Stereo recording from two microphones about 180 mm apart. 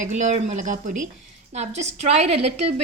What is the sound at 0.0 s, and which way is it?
A woman's voice, 40° right (ahead or behind).